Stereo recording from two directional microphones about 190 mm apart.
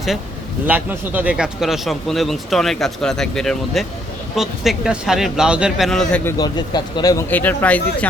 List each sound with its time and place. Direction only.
0.7 s speech: 10° right (ahead or behind)
6.3 s speech: 20° left (ahead or behind)